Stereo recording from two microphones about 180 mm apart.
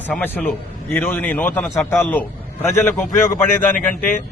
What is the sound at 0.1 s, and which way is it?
A man's voice, 10° left (ahead or behind).